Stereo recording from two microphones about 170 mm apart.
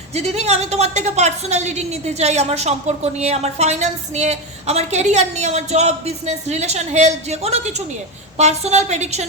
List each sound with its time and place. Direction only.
0.1 s a woman's voice: 40° right (ahead or behind)